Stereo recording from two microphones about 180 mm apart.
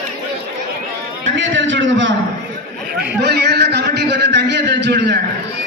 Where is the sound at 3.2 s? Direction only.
65° right (ahead or behind).